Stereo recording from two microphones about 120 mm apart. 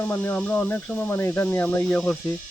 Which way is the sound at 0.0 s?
20° left (ahead or behind).